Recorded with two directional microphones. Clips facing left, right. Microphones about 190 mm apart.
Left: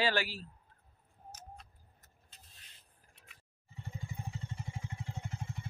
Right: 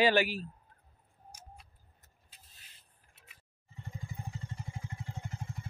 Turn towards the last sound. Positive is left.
turn(degrees=0)  # may be behind; listen again after turning